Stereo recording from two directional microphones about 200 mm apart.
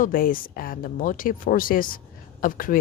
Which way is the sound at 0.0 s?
45° left (ahead or behind).